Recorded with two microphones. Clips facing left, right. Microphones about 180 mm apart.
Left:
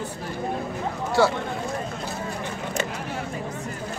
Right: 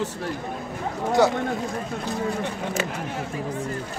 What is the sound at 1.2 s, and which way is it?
Speech, 20° right (ahead or behind).